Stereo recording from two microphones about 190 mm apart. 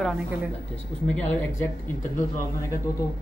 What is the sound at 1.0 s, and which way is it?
Speech, 5° left (ahead or behind).